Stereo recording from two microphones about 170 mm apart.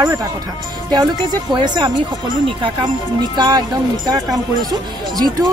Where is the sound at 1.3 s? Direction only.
25° right (ahead or behind).